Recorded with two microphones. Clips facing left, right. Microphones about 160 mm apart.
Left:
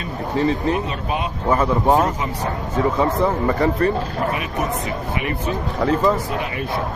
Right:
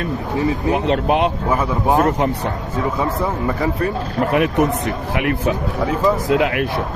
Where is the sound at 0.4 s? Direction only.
10° right (ahead or behind).